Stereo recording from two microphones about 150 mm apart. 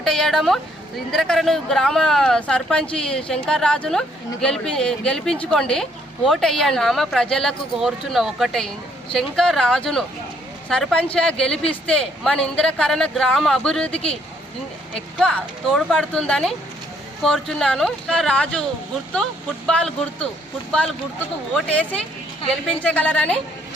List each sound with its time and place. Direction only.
0.0 s speech: centre (ahead or behind)
13.9 s speech: 40° left (ahead or behind)
14.9 s a woman's voice: 5° left (ahead or behind)